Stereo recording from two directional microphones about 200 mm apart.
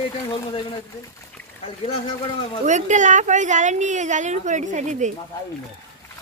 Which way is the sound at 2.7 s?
35° right (ahead or behind).